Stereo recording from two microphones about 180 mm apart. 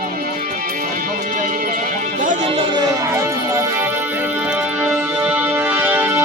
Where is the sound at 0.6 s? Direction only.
50° right (ahead or behind).